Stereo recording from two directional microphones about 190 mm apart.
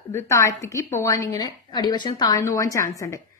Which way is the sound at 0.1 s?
15° left (ahead or behind).